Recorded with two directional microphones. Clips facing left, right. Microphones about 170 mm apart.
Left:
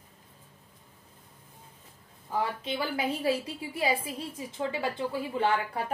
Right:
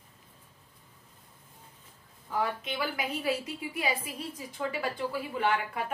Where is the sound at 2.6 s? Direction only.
30° left (ahead or behind).